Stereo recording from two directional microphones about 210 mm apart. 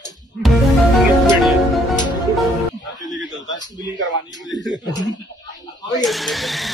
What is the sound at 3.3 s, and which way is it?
A man's voice, 20° left (ahead or behind).